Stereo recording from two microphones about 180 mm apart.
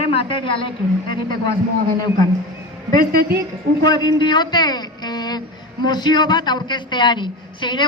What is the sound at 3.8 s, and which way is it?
Speech, 25° left (ahead or behind).